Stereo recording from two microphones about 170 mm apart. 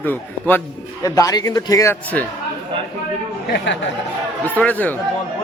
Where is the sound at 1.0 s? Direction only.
20° left (ahead or behind).